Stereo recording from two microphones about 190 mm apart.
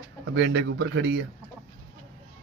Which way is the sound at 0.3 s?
65° right (ahead or behind).